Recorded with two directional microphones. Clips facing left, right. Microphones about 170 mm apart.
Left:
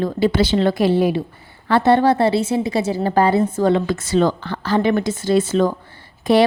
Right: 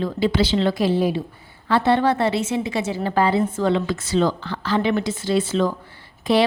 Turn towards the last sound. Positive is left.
turn(degrees=45)  # may be behind; listen again after turning